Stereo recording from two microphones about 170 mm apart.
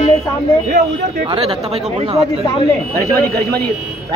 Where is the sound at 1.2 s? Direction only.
35° right (ahead or behind).